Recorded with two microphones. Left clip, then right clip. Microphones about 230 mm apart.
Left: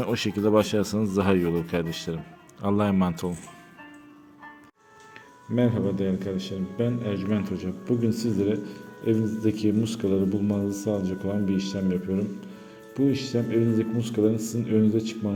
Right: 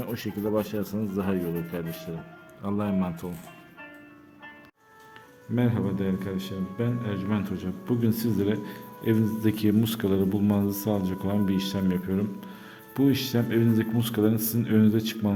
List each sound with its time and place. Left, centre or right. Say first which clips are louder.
0.0 s speech: left 6 dB; left
5.5 s a man's voice: left 3 dB; centre; by 15.3 s right